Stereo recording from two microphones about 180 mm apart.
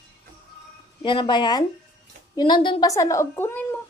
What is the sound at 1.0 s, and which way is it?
A woman's voice, 25° left (ahead or behind).